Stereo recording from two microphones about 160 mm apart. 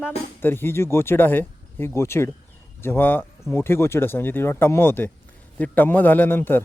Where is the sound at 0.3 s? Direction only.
15° left (ahead or behind).